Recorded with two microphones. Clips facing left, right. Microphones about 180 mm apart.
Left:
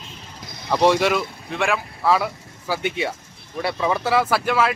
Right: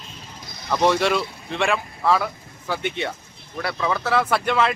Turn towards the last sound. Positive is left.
turn(degrees=5)  # may be behind; listen again after turning